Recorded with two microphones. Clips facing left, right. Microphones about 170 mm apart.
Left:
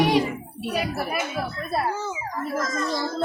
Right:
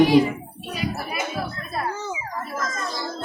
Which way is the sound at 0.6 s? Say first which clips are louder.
Left 2 dB; 65° left (ahead or behind).